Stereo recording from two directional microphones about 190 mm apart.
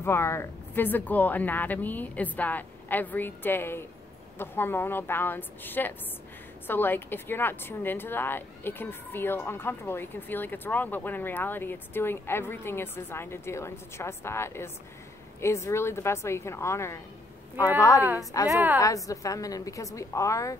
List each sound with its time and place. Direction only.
0.0 s a woman's voice: 15° left (ahead or behind)
18.5 s a woman's voice: 10° right (ahead or behind)
19.0 s a woman's voice: 15° left (ahead or behind)